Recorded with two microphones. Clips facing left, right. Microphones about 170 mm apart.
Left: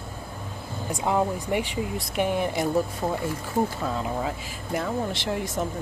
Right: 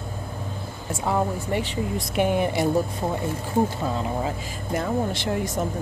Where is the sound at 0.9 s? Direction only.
15° left (ahead or behind).